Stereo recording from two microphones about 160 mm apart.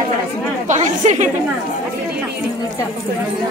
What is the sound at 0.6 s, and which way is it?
Speech, 50° right (ahead or behind).